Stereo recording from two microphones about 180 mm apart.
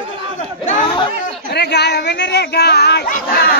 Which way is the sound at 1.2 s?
65° left (ahead or behind).